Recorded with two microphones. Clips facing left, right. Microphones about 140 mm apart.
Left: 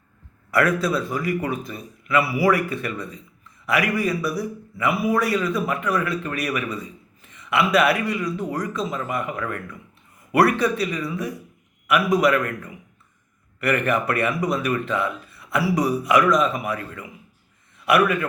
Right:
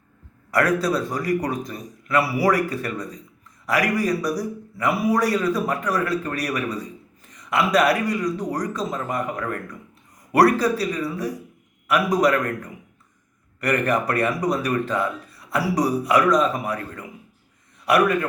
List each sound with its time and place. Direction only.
0.5 s a man's voice: 35° right (ahead or behind)